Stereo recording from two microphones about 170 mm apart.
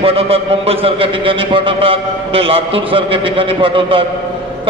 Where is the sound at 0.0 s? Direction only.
35° right (ahead or behind).